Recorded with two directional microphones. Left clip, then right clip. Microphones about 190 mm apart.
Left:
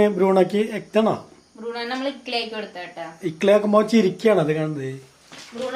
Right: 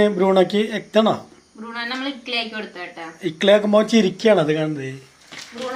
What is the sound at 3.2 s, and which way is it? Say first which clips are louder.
Speech: right 2 dB; 10° left (ahead or behind).